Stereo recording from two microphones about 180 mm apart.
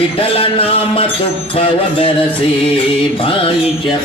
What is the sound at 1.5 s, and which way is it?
Music, 30° left (ahead or behind).